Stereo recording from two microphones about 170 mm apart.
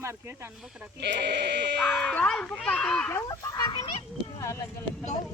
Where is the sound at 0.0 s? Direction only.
15° right (ahead or behind).